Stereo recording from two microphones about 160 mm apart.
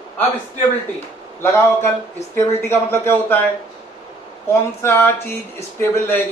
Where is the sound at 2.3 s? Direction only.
15° left (ahead or behind).